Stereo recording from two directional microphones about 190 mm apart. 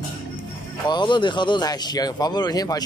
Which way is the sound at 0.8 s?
25° left (ahead or behind).